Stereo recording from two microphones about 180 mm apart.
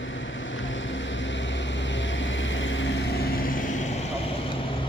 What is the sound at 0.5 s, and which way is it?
Vehicle, 90° left.